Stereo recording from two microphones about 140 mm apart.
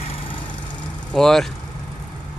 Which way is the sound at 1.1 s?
5° left (ahead or behind).